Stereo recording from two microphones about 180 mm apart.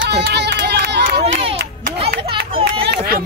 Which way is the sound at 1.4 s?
30° right (ahead or behind).